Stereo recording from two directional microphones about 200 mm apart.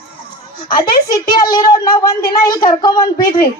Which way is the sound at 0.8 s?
20° left (ahead or behind).